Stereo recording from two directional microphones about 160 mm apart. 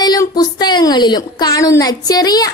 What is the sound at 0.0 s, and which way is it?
A woman's voice, 25° left (ahead or behind).